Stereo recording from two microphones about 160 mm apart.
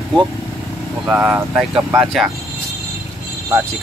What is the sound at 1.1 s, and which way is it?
Speech, 15° right (ahead or behind).